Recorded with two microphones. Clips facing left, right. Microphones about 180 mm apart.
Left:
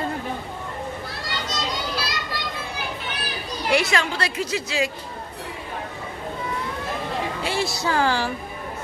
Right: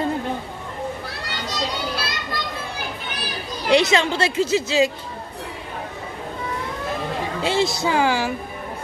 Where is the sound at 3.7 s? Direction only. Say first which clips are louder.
Right 5 dB; 20° right (ahead or behind).